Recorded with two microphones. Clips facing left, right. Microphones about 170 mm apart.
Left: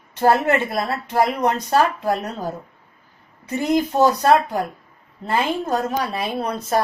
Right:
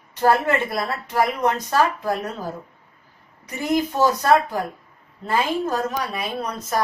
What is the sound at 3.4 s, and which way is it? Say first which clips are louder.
A woman's voice: left 3 dB; 25° left (ahead or behind).